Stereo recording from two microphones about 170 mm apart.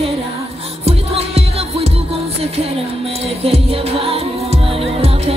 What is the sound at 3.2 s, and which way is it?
Music, 35° right (ahead or behind).